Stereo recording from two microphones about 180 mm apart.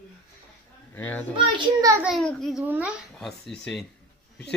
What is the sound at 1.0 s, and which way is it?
Speech, 10° left (ahead or behind).